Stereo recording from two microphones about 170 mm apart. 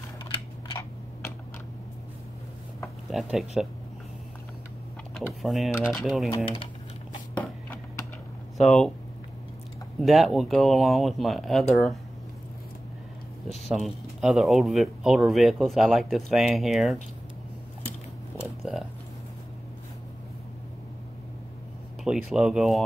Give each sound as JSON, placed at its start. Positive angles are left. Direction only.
{"t": 3.1, "sound": "speech", "side_deg": 0}
{"t": 5.1, "sound": "speech", "side_deg": 0}
{"t": 7.3, "sound": "a sound", "side_deg": 10}
{"t": 8.6, "sound": "speech", "side_deg": 0}
{"t": 9.9, "sound": "speech", "side_deg": 0}
{"t": 13.7, "sound": "speech", "side_deg": 0}
{"t": 18.4, "sound": "a sound", "side_deg": -5}
{"t": 22.0, "sound": "speech", "side_deg": -5}